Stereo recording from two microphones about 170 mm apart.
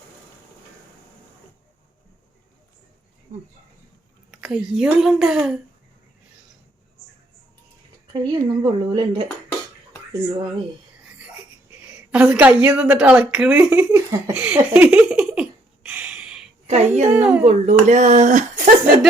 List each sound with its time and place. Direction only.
4.3 s a woman's voice: 5° right (ahead or behind)
8.1 s speech: 30° right (ahead or behind)
11.9 s a woman's voice: 5° right (ahead or behind)
13.9 s laughter: 15° right (ahead or behind)
14.3 s a sound: 10° right (ahead or behind)
16.6 s speech: 40° right (ahead or behind)